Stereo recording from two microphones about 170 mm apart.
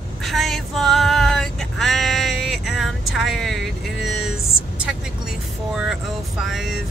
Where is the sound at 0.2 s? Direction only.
Centre (ahead or behind).